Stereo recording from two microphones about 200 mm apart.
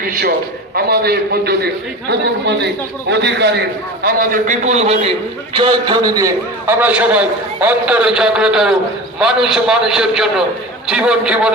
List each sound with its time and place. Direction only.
0.9 s a man's voice: 50° right (ahead or behind)
3.1 s a man's voice: 60° right (ahead or behind)
4.0 s a man's voice: 45° right (ahead or behind); by 6.2 s 20° right (ahead or behind)
6.7 s a man's voice: 10° right (ahead or behind)